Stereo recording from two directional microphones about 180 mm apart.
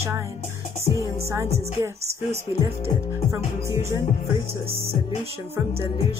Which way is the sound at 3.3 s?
15° right (ahead or behind).